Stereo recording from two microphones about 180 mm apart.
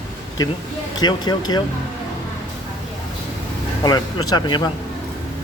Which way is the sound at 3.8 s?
20° left (ahead or behind).